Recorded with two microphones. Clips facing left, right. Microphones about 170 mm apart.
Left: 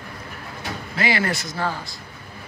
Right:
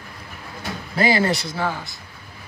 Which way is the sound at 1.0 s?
40° right (ahead or behind).